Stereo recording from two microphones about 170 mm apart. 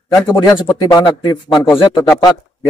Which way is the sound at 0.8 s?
25° left (ahead or behind).